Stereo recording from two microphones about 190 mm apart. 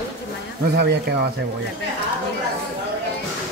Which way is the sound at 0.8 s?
60° right (ahead or behind).